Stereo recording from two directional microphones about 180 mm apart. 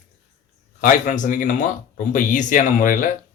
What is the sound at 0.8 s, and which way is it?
Speech, 45° left (ahead or behind).